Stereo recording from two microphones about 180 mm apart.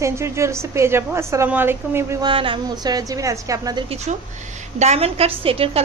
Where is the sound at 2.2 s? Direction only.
30° right (ahead or behind).